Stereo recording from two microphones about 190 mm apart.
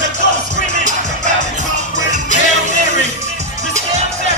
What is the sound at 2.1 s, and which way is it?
Music, 40° right (ahead or behind).